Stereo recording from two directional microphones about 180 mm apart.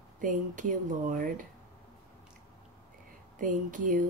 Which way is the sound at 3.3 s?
45° right (ahead or behind).